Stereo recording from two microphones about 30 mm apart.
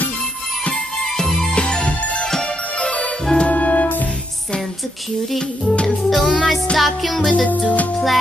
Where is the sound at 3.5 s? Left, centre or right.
Left.